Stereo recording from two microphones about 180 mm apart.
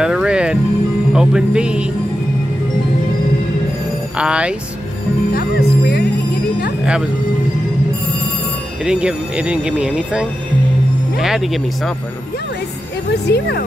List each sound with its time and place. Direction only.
0.0 s music: 5° right (ahead or behind)
1.1 s speech: 5° right (ahead or behind)
4.2 s speech: 5° right (ahead or behind)
5.3 s music: 60° left (ahead or behind)
8.8 s speech: 5° right (ahead or behind)
13.1 s speech: 65° left (ahead or behind)